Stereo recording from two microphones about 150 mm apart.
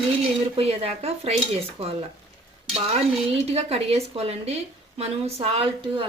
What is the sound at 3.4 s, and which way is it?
A woman's voice, 45° right (ahead or behind).